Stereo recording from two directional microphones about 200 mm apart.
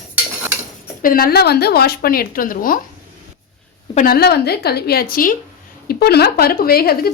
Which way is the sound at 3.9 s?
40° left (ahead or behind).